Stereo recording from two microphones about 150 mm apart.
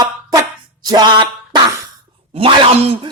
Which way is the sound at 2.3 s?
40° right (ahead or behind).